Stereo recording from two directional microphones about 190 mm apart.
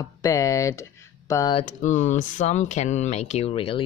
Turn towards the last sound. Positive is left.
turn(degrees=30)  # may be behind; listen again after turning